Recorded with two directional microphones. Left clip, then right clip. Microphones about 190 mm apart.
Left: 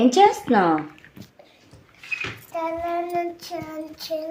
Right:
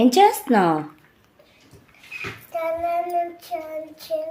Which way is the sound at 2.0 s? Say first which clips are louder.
Left 7 dB; 55° left (ahead or behind).